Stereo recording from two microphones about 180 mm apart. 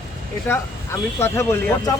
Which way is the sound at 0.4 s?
15° left (ahead or behind).